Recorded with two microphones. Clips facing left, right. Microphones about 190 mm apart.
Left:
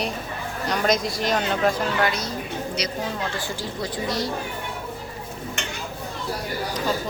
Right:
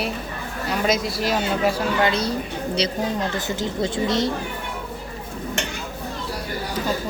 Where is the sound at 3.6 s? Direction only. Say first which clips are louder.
Right 5 dB; 25° right (ahead or behind).